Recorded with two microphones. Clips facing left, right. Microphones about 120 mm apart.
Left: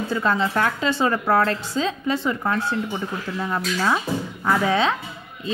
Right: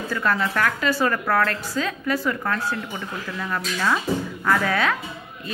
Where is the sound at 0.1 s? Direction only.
25° left (ahead or behind).